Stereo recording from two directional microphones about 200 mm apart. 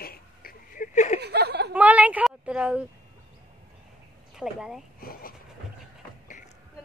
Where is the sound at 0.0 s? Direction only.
50° left (ahead or behind).